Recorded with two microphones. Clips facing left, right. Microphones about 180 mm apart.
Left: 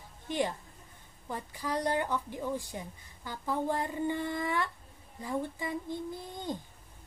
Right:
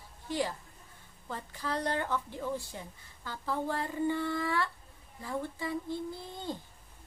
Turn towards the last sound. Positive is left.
turn(degrees=15)  # may be behind; listen again after turning